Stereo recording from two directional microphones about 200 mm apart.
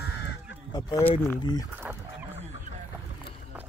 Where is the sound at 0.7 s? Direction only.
20° left (ahead or behind).